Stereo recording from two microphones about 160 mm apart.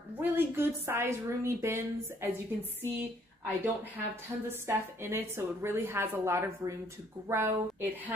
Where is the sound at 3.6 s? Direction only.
15° right (ahead or behind).